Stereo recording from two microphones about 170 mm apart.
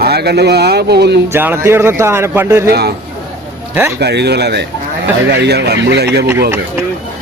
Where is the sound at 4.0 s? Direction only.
75° right (ahead or behind).